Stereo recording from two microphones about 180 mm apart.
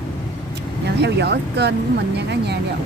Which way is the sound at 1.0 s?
65° right (ahead or behind).